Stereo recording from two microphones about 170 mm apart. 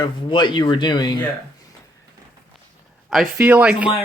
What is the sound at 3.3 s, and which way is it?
Speech, 10° right (ahead or behind).